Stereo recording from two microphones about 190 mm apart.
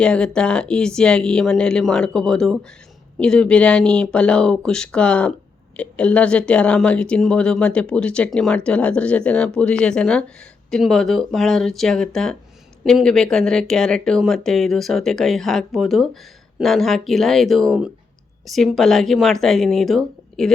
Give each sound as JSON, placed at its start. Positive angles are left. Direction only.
{"t": 0.0, "sound": "speech", "side_deg": 5}